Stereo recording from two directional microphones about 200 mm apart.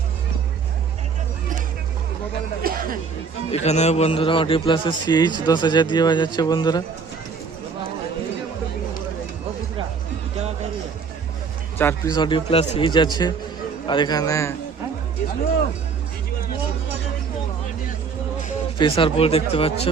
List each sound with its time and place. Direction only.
2.6 s chatter: 45° right (ahead or behind)
3.5 s a man's voice: 35° left (ahead or behind)
11.8 s speech: 10° left (ahead or behind)
12.1 s a man's voice: 25° left (ahead or behind)
18.8 s a man's voice: 25° left (ahead or behind)